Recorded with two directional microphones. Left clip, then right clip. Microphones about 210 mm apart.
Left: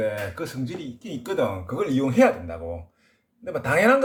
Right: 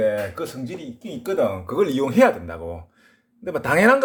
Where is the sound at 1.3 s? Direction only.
50° right (ahead or behind).